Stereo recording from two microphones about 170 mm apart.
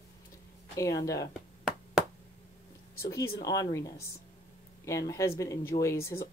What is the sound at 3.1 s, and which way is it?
Speech, 20° left (ahead or behind).